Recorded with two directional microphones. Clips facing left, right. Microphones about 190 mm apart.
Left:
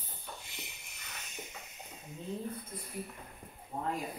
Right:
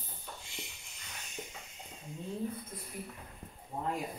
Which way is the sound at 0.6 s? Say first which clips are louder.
Right 1 dB; 65° left (ahead or behind).